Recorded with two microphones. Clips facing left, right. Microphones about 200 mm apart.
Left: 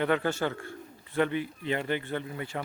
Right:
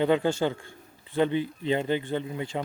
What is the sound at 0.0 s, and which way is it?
Speech, 20° right (ahead or behind).